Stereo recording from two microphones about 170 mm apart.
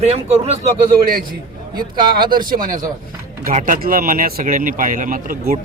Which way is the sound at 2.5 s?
55° right (ahead or behind).